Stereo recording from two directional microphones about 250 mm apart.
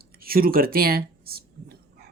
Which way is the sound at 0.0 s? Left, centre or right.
Right.